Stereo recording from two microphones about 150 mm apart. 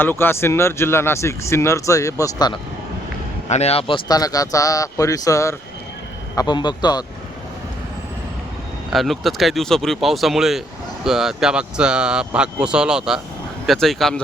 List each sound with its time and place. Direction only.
0.0 s speech: 15° left (ahead or behind)
3.5 s speech: 45° left (ahead or behind); by 7.0 s 30° left (ahead or behind)
8.9 s speech: centre (ahead or behind)